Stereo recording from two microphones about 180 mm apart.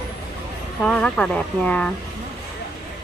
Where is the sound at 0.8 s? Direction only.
5° left (ahead or behind).